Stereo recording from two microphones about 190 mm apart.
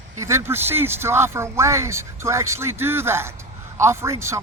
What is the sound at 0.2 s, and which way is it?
A man's voice, 15° right (ahead or behind).